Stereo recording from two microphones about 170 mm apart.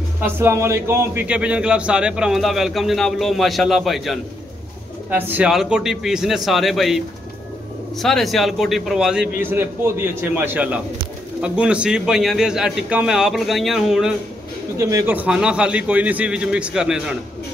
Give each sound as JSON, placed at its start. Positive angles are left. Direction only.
{"t": 0.2, "sound": "a man's voice", "side_deg": -15}
{"t": 8.0, "sound": "a man's voice", "side_deg": 0}
{"t": 14.8, "sound": "a man's voice", "side_deg": -15}